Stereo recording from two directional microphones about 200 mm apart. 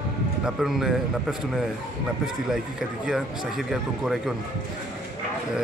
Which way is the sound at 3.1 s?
Centre (ahead or behind).